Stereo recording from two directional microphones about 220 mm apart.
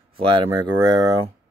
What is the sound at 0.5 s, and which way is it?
Speech, 15° right (ahead or behind).